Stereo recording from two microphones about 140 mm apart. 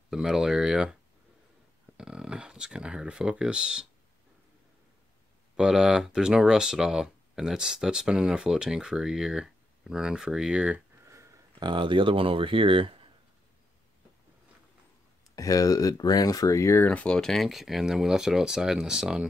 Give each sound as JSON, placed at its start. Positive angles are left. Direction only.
{"t": 0.1, "sound": "speech", "side_deg": -5}
{"t": 2.0, "sound": "speech", "side_deg": -5}
{"t": 5.6, "sound": "speech", "side_deg": -5}
{"t": 11.6, "sound": "speech", "side_deg": -35}
{"t": 15.3, "sound": "speech", "side_deg": 25}